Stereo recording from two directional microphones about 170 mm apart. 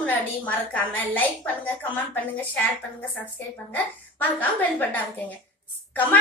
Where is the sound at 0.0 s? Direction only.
10° left (ahead or behind).